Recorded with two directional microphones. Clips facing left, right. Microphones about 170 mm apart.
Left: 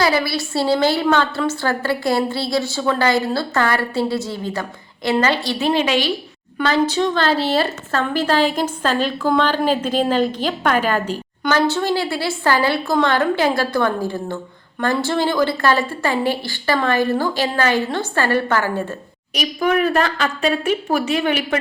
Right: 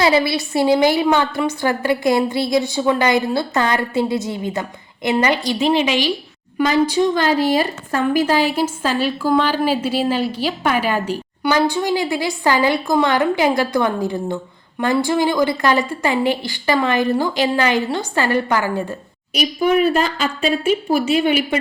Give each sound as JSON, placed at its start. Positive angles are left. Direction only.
{"t": 0.0, "sound": "a woman's voice", "side_deg": -20}